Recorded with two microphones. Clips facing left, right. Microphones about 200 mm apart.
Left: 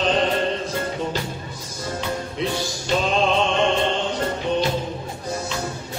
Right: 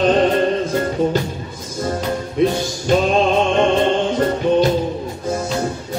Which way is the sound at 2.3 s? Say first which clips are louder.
Right 8 dB; 45° right (ahead or behind).